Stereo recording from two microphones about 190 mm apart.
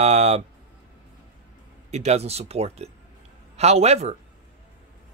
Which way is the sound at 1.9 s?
35° right (ahead or behind).